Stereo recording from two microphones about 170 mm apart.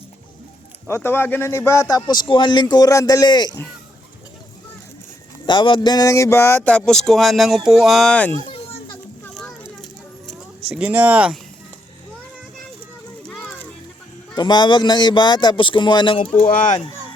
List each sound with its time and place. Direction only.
0.9 s a man's voice: 15° left (ahead or behind)
5.5 s a man's voice: 30° left (ahead or behind)
6.6 s speech: 5° left (ahead or behind)
10.8 s speech: 10° right (ahead or behind)
13.2 s a sound: 5° left (ahead or behind)
14.3 s a man's voice: 25° left (ahead or behind)
16.4 s speech: 50° left (ahead or behind)